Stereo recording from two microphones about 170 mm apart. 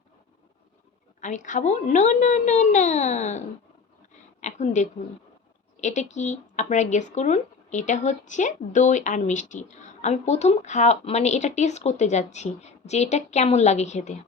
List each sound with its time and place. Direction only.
1.2 s a woman's voice: 50° left (ahead or behind)